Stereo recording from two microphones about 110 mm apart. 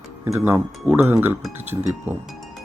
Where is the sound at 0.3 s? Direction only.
20° right (ahead or behind).